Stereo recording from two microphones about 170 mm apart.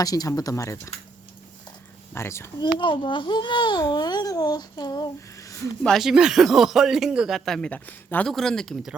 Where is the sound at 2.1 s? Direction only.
15° left (ahead or behind).